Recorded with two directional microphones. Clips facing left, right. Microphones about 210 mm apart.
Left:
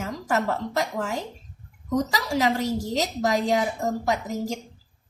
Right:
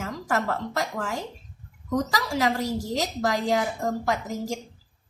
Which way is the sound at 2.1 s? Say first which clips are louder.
Left 1 dB; 20° left (ahead or behind).